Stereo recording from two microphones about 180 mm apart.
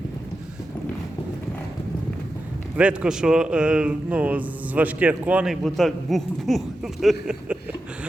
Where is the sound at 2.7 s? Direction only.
5° right (ahead or behind).